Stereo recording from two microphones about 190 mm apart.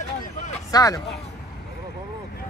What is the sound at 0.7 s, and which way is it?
Speech, 20° left (ahead or behind).